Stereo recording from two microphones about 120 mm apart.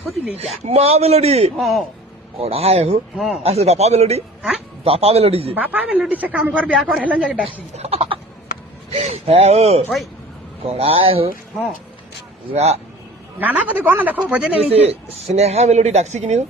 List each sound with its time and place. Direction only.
0.6 s speech: 60° right (ahead or behind)
1.5 s speech: centre (ahead or behind)
2.4 s speech: 55° right (ahead or behind)
3.2 s speech: 5° right (ahead or behind)
3.4 s speech: 60° right (ahead or behind)
5.5 s speech: 10° right (ahead or behind)
7.4 s speech: 55° right (ahead or behind)
12.5 s speech: 65° right (ahead or behind)
13.4 s speech: 15° right (ahead or behind)
14.6 s speech: 55° right (ahead or behind); by 16.4 s 70° right (ahead or behind)